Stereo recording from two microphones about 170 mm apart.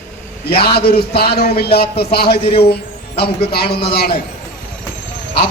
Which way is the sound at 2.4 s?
35° left (ahead or behind).